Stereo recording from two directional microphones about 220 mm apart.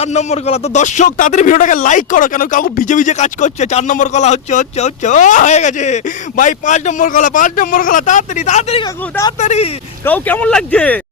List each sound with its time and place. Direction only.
0.0 s speech: 30° left (ahead or behind)
8.8 s speech: 15° left (ahead or behind)
9.4 s speech: 30° left (ahead or behind)
10.0 s speech: 10° left (ahead or behind)